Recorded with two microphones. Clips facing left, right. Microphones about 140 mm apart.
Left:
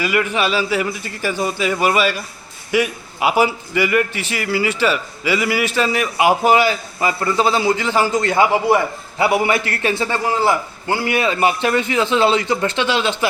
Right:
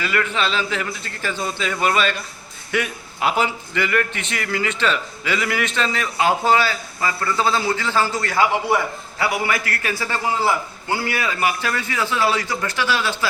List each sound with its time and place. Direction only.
0.0 s a man's voice: 10° left (ahead or behind)